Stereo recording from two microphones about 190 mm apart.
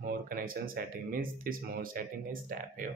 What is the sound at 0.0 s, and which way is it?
Speech, 50° right (ahead or behind).